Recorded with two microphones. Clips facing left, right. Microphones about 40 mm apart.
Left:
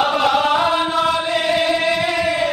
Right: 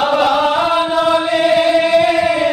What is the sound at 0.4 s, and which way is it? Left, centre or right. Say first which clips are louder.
Chant: right 2 dB; centre.